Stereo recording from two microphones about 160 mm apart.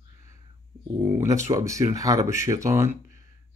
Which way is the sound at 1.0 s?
20° right (ahead or behind).